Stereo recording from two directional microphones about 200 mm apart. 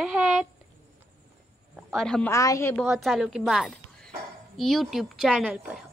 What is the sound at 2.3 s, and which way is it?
Speech, 15° left (ahead or behind).